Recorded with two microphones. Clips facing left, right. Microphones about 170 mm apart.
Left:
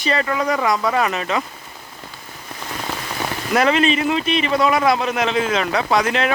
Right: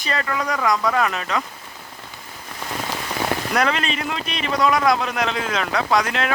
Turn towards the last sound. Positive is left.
turn(degrees=0)  # may be behind; listen again after turning